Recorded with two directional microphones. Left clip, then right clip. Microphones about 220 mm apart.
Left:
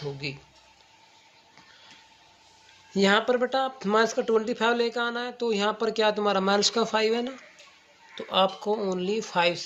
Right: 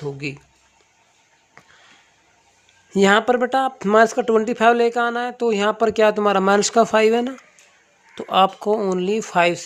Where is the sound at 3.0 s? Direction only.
50° right (ahead or behind).